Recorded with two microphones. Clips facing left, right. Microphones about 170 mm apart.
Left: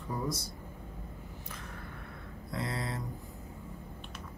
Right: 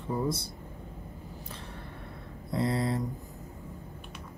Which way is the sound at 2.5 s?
25° right (ahead or behind).